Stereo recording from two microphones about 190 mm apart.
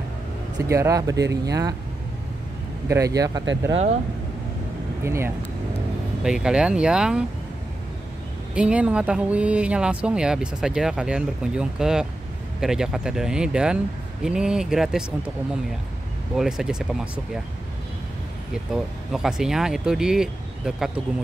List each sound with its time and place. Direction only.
0.7 s speech: 15° right (ahead or behind)
2.9 s speech: 20° right (ahead or behind)
5.0 s speech: 15° right (ahead or behind)
8.5 s speech: 5° right (ahead or behind)
18.7 s speech: 5° right (ahead or behind)